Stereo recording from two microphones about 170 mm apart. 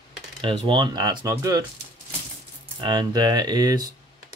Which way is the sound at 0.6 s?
30° right (ahead or behind).